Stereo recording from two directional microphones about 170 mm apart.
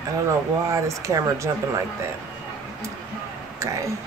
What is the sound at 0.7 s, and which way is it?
Speech, 20° right (ahead or behind).